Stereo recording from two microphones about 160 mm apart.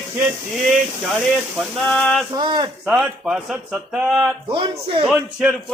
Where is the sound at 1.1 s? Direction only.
Centre (ahead or behind).